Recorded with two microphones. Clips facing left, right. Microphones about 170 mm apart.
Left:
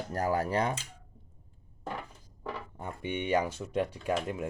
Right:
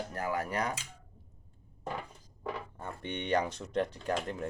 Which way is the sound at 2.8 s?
5° left (ahead or behind).